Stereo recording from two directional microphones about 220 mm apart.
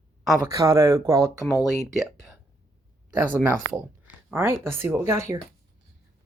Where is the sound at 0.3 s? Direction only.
15° right (ahead or behind).